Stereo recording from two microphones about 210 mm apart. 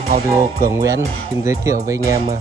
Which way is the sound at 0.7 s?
15° right (ahead or behind).